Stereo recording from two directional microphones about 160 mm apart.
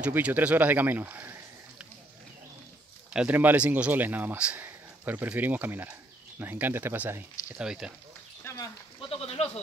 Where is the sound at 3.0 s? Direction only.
10° right (ahead or behind).